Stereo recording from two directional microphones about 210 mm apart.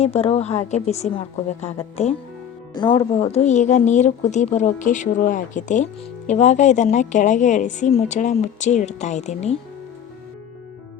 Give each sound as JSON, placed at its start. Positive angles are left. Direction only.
{"t": 0.0, "sound": "a woman's voice", "side_deg": 30}
{"t": 2.7, "sound": "speech", "side_deg": 20}
{"t": 3.2, "sound": "a woman's voice", "side_deg": 30}